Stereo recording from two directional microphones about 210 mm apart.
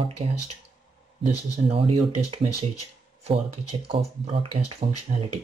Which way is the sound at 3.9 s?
30° right (ahead or behind).